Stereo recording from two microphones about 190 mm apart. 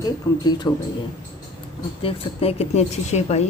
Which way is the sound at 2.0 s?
30° left (ahead or behind).